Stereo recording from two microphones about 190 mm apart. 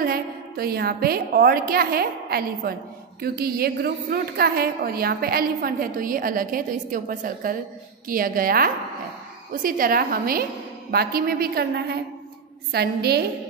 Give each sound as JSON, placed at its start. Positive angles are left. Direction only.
{"t": 0.0, "sound": "a woman's voice", "side_deg": -50}